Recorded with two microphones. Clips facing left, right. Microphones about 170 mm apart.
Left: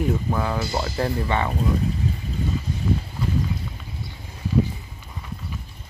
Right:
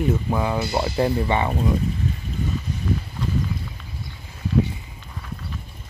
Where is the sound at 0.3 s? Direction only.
15° right (ahead or behind).